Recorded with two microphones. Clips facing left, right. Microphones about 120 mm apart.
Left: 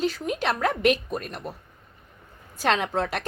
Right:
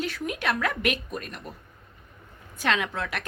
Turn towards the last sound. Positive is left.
turn(degrees=35)  # may be behind; listen again after turning